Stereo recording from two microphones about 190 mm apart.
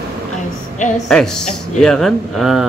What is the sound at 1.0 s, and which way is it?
Speech, 5° left (ahead or behind).